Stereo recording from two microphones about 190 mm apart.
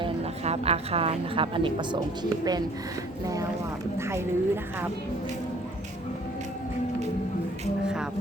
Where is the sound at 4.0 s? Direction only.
15° right (ahead or behind).